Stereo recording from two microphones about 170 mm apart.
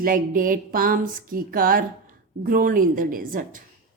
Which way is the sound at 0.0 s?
55° right (ahead or behind).